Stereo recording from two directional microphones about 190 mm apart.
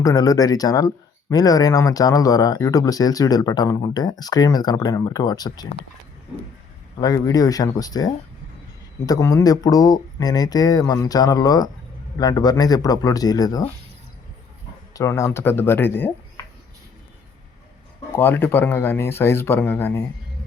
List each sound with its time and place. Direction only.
0.0 s speech: 20° left (ahead or behind)
7.0 s speech: 20° left (ahead or behind)
14.9 s speech: 15° left (ahead or behind)
18.2 s speech: 10° left (ahead or behind)